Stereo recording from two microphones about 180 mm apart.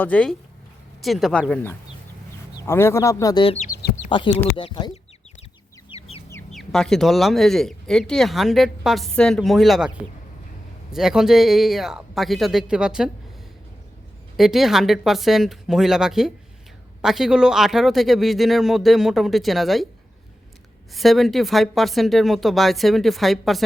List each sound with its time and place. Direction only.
0.0 s speech: 5° left (ahead or behind)
3.4 s speech: 35° left (ahead or behind)
5.9 s chicken: 30° left (ahead or behind)
6.5 s speech: centre (ahead or behind)
14.3 s speech: centre (ahead or behind)
20.9 s speech: centre (ahead or behind)